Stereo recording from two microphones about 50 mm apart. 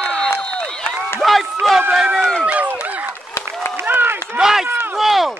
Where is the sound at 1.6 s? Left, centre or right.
Centre.